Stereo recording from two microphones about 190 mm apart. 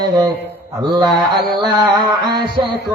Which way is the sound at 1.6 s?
20° right (ahead or behind).